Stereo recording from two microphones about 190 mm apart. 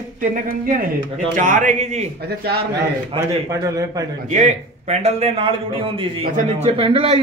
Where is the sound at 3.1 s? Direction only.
15° right (ahead or behind).